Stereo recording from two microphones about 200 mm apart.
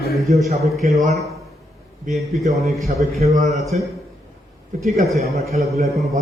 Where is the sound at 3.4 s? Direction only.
35° right (ahead or behind).